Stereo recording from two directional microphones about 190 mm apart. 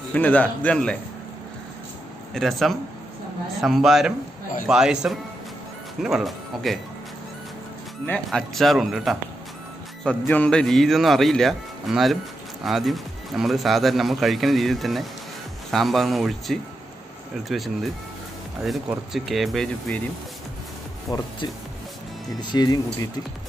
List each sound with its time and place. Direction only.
0.1 s a man's voice: 10° left (ahead or behind)
2.3 s speech: centre (ahead or behind)
8.1 s speech: centre (ahead or behind)
21.1 s speech: 20° left (ahead or behind)
22.4 s speech: 25° left (ahead or behind)